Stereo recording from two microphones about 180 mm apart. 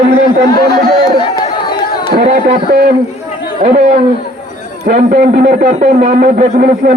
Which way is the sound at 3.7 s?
35° right (ahead or behind).